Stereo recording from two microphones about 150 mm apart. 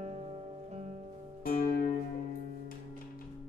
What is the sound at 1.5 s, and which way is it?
Music, 75° left (ahead or behind).